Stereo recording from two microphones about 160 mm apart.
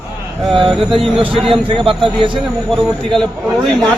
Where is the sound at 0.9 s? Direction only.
35° right (ahead or behind).